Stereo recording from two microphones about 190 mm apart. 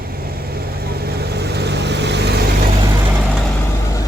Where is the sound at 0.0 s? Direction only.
55° right (ahead or behind).